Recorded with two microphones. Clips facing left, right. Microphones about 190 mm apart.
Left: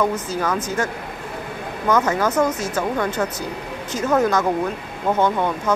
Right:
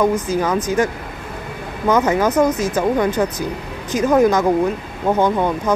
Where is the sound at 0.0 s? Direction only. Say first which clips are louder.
Right 4 dB; 15° right (ahead or behind).